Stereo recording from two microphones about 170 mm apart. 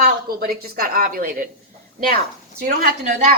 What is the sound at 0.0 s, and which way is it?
A woman's voice, 60° right (ahead or behind).